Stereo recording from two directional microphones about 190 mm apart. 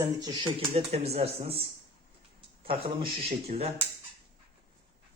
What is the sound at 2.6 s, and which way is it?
Speech, 30° right (ahead or behind).